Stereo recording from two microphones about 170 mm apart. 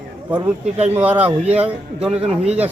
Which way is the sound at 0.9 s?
10° right (ahead or behind).